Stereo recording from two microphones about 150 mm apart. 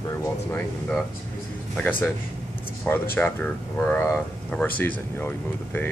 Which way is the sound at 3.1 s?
10° left (ahead or behind).